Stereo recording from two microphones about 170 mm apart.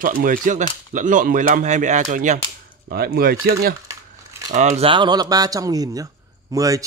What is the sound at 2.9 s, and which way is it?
Speech, 65° right (ahead or behind).